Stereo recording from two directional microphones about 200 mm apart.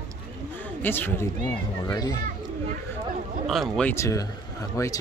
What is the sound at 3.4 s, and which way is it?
A man's voice, centre (ahead or behind).